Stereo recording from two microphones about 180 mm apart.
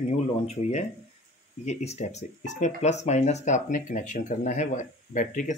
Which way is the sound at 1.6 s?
40° left (ahead or behind).